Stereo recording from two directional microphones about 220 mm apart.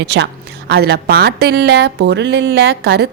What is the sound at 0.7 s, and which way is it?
Speech, 50° right (ahead or behind).